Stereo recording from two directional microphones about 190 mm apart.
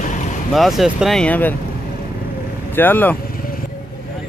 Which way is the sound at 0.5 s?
Centre (ahead or behind).